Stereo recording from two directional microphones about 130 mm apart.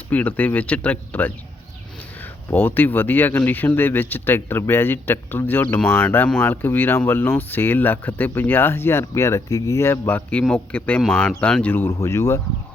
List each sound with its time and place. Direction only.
0.1 s speech: 10° left (ahead or behind)